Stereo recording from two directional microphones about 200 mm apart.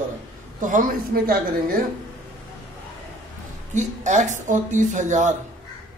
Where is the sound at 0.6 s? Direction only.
40° right (ahead or behind).